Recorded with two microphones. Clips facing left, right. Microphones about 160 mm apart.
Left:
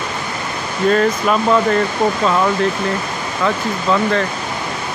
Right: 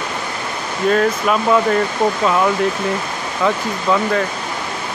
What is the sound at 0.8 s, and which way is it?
Speech, 5° right (ahead or behind).